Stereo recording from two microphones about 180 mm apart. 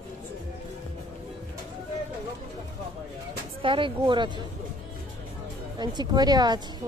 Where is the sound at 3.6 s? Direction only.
30° right (ahead or behind).